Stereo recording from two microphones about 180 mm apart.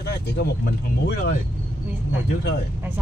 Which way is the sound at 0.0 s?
65° left (ahead or behind).